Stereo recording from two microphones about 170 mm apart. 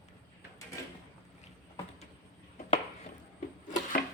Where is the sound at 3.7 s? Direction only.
50° left (ahead or behind).